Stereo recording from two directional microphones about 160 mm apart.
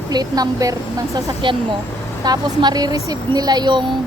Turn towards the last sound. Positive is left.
turn(degrees=-25)  # may be behind; listen again after turning